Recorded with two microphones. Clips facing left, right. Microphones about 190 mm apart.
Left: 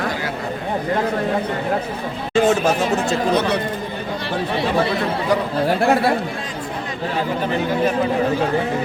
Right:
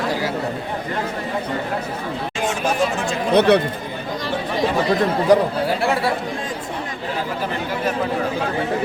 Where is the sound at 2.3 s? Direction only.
40° left (ahead or behind).